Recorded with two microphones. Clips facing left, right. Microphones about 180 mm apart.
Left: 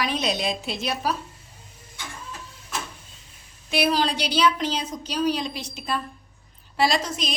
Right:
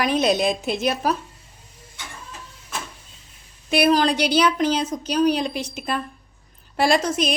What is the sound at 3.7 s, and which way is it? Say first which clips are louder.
A woman's voice: right 5 dB; 55° right (ahead or behind).